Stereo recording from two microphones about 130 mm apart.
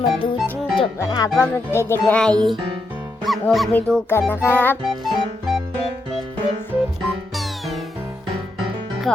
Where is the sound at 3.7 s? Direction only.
5° left (ahead or behind).